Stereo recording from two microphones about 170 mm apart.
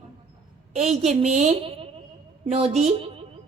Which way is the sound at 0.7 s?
40° right (ahead or behind).